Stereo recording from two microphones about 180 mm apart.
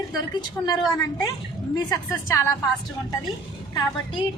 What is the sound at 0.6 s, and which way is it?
Speech, 15° left (ahead or behind).